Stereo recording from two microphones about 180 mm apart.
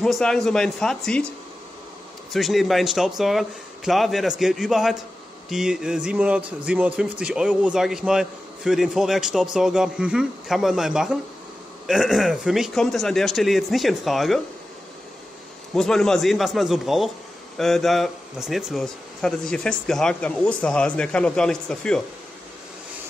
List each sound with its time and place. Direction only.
0.0 s speech: 5° left (ahead or behind)
2.3 s speech: centre (ahead or behind)
15.7 s speech: 5° left (ahead or behind)